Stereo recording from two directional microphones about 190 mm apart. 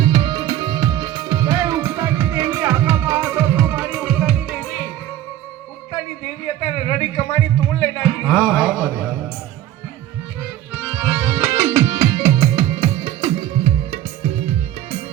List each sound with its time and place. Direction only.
0.0 s music: 25° right (ahead or behind); by 4.9 s centre (ahead or behind)
6.4 s music: 30° left (ahead or behind); by 9.1 s 5° right (ahead or behind)
10.8 s music: 5° right (ahead or behind); by 15.0 s 30° right (ahead or behind)